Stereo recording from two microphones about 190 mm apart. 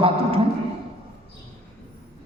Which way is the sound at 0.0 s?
30° right (ahead or behind).